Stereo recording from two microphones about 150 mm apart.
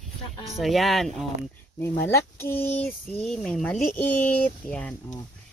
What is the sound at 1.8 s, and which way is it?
Speech, 15° left (ahead or behind).